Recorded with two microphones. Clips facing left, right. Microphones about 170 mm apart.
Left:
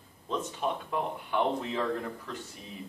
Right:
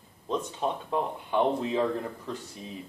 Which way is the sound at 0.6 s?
25° right (ahead or behind).